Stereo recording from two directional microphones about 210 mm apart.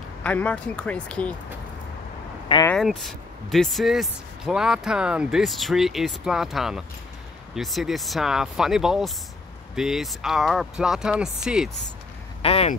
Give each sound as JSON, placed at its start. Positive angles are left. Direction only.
{"t": 0.2, "sound": "speech", "side_deg": 5}
{"t": 2.4, "sound": "vehicle", "side_deg": 20}
{"t": 2.7, "sound": "speech", "side_deg": 0}
{"t": 12.4, "sound": "speech", "side_deg": 30}